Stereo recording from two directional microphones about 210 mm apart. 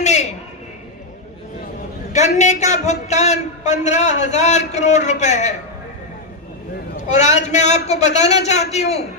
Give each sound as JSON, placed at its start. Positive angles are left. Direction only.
{"t": 0.0, "sound": "a sound", "side_deg": 35}
{"t": 2.1, "sound": "a man's voice", "side_deg": 35}
{"t": 7.1, "sound": "a man's voice", "side_deg": 35}